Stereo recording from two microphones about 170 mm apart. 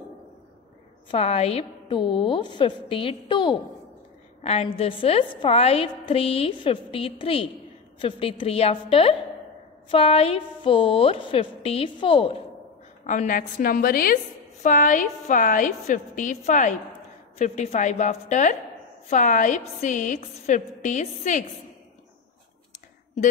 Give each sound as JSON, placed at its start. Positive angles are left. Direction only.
{"t": 1.1, "sound": "a woman's voice", "side_deg": 35}
{"t": 13.0, "sound": "a woman's voice", "side_deg": 50}